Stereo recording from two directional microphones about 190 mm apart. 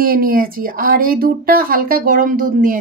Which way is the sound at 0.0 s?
50° right (ahead or behind).